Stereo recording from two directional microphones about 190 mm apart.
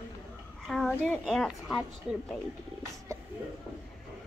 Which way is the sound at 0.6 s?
Centre (ahead or behind).